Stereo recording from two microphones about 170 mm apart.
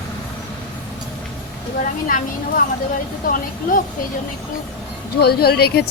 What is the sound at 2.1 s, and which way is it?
Speech, 55° left (ahead or behind).